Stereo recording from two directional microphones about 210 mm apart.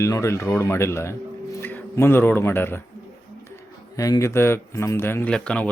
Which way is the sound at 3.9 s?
15° left (ahead or behind).